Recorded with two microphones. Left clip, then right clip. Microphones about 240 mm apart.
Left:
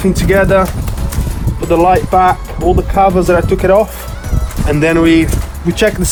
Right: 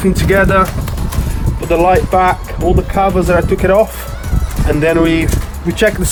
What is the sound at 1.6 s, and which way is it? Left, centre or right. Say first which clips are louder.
Speech: left 1 dB; left.